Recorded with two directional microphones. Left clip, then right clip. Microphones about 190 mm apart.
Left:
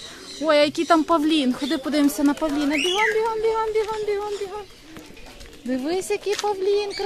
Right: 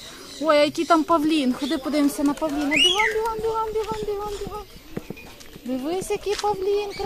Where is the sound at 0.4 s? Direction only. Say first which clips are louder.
Even; 5° left (ahead or behind).